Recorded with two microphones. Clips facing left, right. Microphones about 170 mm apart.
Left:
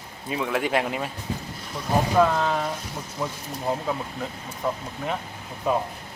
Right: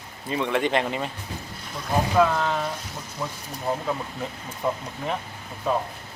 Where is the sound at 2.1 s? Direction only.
5° left (ahead or behind).